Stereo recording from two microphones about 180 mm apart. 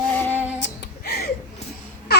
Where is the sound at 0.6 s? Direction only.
60° left (ahead or behind).